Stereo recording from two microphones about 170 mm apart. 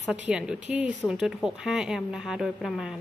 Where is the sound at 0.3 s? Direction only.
5° right (ahead or behind).